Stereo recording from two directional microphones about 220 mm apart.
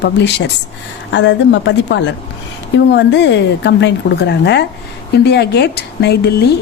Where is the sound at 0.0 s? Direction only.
50° left (ahead or behind).